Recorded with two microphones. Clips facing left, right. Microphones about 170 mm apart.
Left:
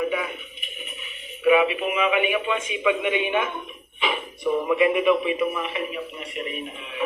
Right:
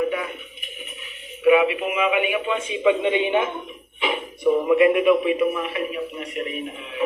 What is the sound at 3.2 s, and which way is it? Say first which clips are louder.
Music: right 3 dB; 20° right (ahead or behind).